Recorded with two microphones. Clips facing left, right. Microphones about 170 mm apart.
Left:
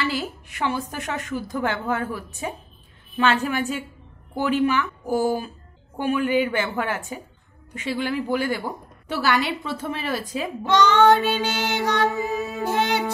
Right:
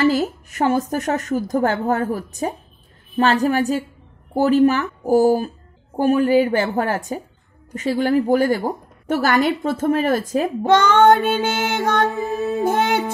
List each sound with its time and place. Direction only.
0.0 s a woman's voice: 40° right (ahead or behind)